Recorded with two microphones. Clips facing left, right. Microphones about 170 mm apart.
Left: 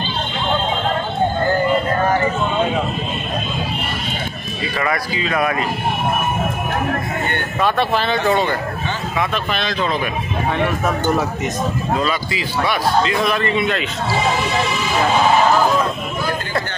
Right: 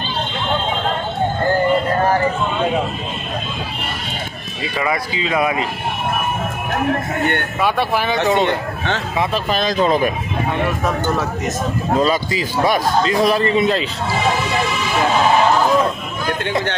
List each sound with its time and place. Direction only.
4.7 s speech: 15° right (ahead or behind)
7.6 s speech: 10° right (ahead or behind)
9.3 s a man's voice: 40° right (ahead or behind)
12.0 s a man's voice: 40° right (ahead or behind)